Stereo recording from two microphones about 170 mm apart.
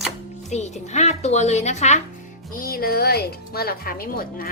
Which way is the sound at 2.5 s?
60° left (ahead or behind).